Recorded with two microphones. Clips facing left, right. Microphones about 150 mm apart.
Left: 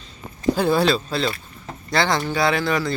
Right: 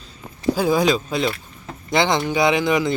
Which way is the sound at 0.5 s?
10° right (ahead or behind).